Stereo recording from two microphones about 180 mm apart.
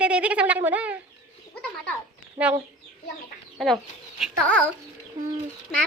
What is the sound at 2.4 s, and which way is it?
Speech, 10° right (ahead or behind).